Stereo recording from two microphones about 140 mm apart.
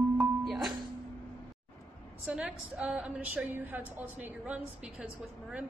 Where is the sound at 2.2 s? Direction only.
5° right (ahead or behind).